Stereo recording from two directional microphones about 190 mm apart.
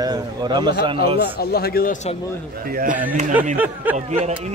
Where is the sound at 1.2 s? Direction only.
55° left (ahead or behind).